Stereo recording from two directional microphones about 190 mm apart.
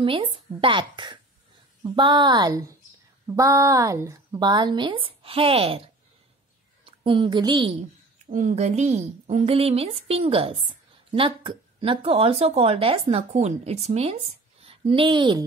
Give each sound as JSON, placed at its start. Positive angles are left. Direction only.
{"t": 0.0, "sound": "a woman's voice", "side_deg": -25}
{"t": 6.9, "sound": "a woman's voice", "side_deg": -25}
{"t": 8.3, "sound": "a woman's voice", "side_deg": -40}